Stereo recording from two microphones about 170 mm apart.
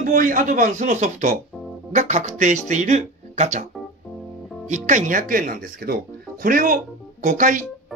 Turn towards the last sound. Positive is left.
turn(degrees=-50)  # may be behind; listen again after turning